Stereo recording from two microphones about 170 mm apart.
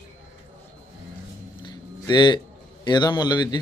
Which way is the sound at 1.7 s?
25° left (ahead or behind).